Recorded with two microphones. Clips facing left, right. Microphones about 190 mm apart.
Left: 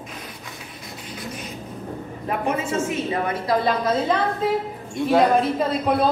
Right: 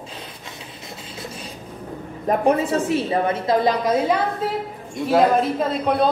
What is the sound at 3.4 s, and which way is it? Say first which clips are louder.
Speech: even; 15° right (ahead or behind).